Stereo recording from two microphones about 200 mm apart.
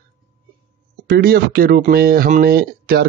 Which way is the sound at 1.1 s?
50° right (ahead or behind).